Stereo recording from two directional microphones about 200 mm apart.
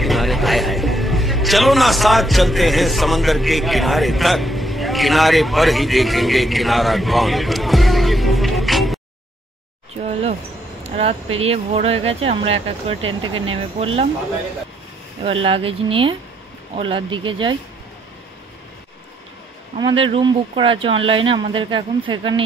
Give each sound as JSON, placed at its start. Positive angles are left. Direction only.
{"t": 0.0, "sound": "a man's voice", "side_deg": 0}
{"t": 11.0, "sound": "speech", "side_deg": -30}
{"t": 15.4, "sound": "speech", "side_deg": -25}
{"t": 19.8, "sound": "speech", "side_deg": -25}